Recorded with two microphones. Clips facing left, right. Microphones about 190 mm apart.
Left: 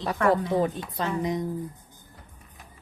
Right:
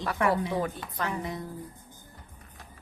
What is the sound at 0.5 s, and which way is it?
Speech, 20° left (ahead or behind).